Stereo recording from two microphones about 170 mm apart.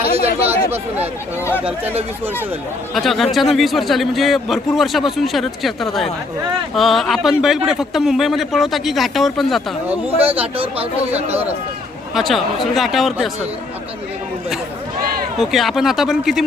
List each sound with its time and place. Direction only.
0.2 s speech: 40° right (ahead or behind)
1.5 s speech: 10° right (ahead or behind)
2.9 s a man's voice: centre (ahead or behind)
10.4 s speech: 35° right (ahead or behind)
12.1 s a man's voice: centre (ahead or behind)
15.4 s a man's voice: centre (ahead or behind)